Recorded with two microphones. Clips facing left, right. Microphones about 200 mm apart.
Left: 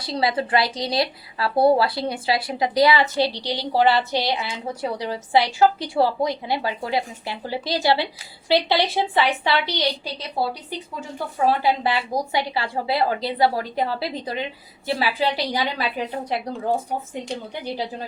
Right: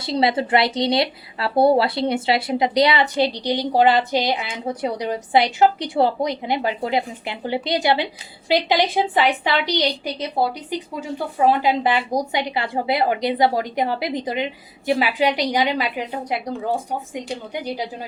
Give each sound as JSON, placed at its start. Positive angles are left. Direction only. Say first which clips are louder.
{"t": 0.0, "sound": "a woman's voice", "louder": "right 3 dB", "side_deg": -25}
{"t": 11.4, "sound": "a woman's voice", "louder": "right 2 dB", "side_deg": -20}
{"t": 17.2, "sound": "a woman's voice", "louder": "right 2 dB", "side_deg": -15}